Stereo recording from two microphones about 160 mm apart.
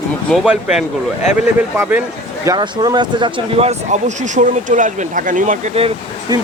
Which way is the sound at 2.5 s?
30° right (ahead or behind).